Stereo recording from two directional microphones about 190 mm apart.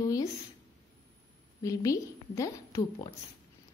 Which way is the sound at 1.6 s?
15° left (ahead or behind).